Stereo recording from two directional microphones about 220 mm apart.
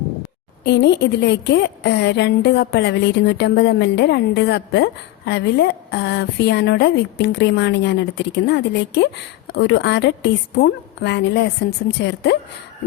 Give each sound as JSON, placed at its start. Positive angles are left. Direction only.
{"t": 0.6, "sound": "a woman's voice", "side_deg": 50}